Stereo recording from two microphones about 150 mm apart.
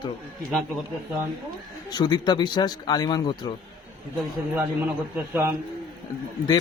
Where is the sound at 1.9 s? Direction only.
30° left (ahead or behind).